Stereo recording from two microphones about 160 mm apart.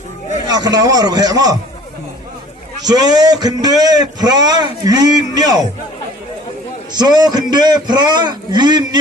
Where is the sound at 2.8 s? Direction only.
25° right (ahead or behind).